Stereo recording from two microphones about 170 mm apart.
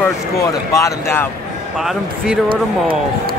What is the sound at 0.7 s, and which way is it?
Speech, 15° left (ahead or behind).